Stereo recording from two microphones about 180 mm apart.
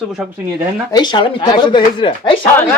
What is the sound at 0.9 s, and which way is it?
Speech, 25° left (ahead or behind).